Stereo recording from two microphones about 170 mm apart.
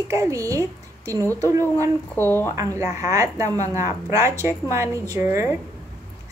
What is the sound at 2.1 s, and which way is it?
Speech, 15° left (ahead or behind).